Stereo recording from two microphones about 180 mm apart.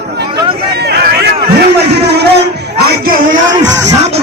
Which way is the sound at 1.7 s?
65° right (ahead or behind).